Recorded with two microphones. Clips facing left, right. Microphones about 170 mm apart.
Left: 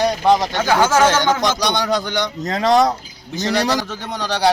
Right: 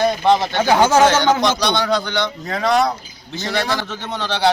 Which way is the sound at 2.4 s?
35° left (ahead or behind).